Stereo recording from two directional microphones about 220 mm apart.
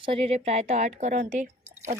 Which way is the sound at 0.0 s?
25° right (ahead or behind).